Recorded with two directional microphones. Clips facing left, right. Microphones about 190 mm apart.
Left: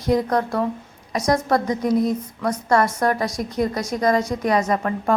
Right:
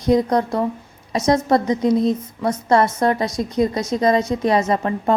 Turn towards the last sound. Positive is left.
turn(degrees=-25)  # may be behind; listen again after turning